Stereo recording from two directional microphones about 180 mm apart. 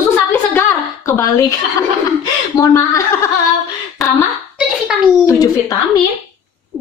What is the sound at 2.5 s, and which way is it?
Speech, 20° left (ahead or behind).